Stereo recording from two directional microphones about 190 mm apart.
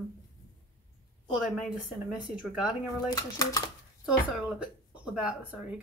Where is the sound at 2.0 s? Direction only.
5° right (ahead or behind).